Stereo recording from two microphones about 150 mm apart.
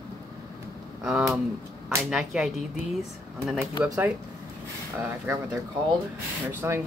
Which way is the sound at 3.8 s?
10° right (ahead or behind).